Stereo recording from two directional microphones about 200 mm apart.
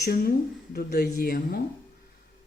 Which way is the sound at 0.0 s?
50° left (ahead or behind).